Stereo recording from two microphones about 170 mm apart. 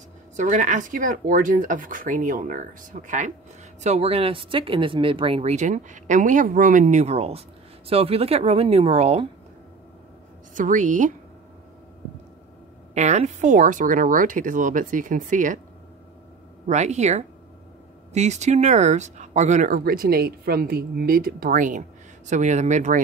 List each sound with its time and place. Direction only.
0.4 s speech: 50° right (ahead or behind)
10.5 s speech: 50° right (ahead or behind)
12.9 s speech: 40° right (ahead or behind)
16.6 s speech: 45° right (ahead or behind)